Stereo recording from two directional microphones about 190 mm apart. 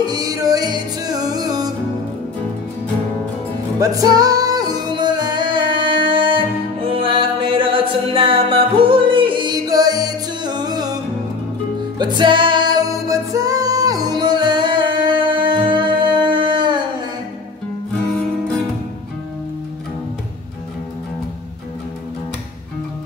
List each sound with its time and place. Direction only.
0.0 s music: 20° right (ahead or behind)
3.8 s music: 20° right (ahead or behind)
12.0 s music: 25° right (ahead or behind)